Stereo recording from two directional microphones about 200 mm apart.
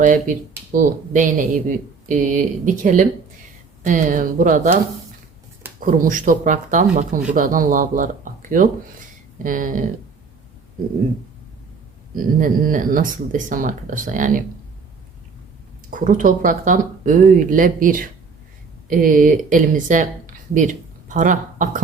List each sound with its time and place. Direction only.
0.0 s speech: 40° right (ahead or behind)
5.8 s speech: 40° right (ahead or behind)
12.1 s speech: 45° right (ahead or behind)
15.9 s speech: 40° right (ahead or behind)